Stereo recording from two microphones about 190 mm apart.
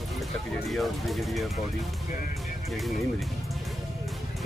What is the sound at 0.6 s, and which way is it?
Speech, centre (ahead or behind).